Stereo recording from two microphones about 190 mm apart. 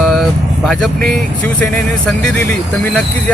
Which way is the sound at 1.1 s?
5° left (ahead or behind).